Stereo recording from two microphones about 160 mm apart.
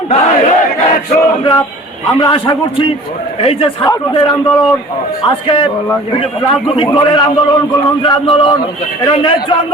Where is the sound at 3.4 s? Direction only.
35° left (ahead or behind).